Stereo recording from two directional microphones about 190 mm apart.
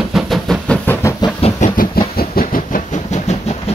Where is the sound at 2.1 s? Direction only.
50° left (ahead or behind).